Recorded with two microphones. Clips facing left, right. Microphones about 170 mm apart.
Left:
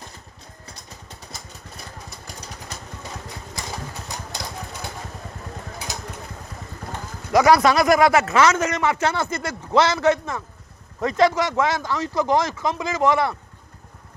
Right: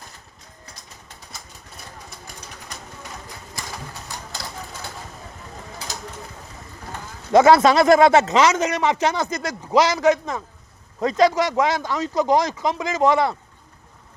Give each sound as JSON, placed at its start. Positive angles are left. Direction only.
{"t": 4.4, "sound": "engine", "side_deg": 20}
{"t": 7.3, "sound": "speech", "side_deg": -25}